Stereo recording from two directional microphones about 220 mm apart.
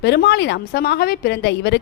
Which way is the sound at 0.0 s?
50° left (ahead or behind).